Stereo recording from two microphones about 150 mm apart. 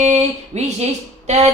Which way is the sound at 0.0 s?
50° right (ahead or behind).